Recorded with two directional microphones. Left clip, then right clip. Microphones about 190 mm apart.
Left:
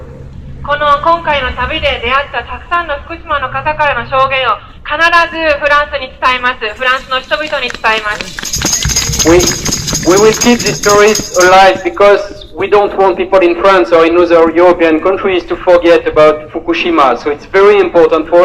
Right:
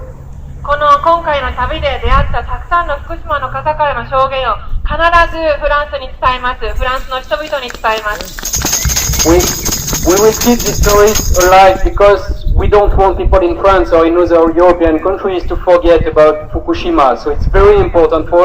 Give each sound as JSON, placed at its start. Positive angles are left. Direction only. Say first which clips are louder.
{"t": 0.7, "sound": "speech", "louder": "right 1 dB", "side_deg": 30}
{"t": 10.1, "sound": "a man's voice", "louder": "left 2 dB", "side_deg": 25}